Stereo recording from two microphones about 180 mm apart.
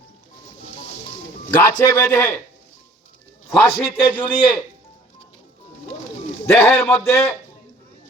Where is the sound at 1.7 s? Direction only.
20° left (ahead or behind).